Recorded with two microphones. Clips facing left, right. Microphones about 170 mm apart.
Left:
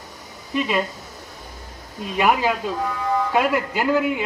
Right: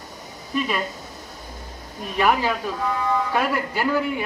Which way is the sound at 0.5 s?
20° left (ahead or behind).